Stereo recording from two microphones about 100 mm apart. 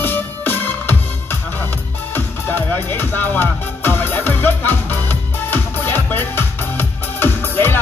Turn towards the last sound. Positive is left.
turn(degrees=20)  # may be behind; listen again after turning